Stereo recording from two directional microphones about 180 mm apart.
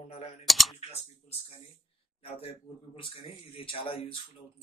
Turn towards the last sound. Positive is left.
turn(degrees=30)  # may be behind; listen again after turning